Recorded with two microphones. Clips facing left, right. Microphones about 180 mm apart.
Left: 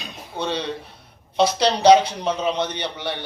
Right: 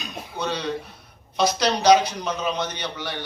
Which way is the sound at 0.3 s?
25° left (ahead or behind).